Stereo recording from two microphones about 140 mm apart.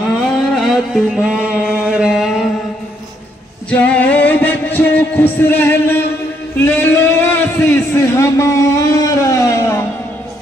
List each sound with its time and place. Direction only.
0.6 s music: centre (ahead or behind)
3.7 s music: 10° left (ahead or behind)
6.5 s a sound: 15° left (ahead or behind)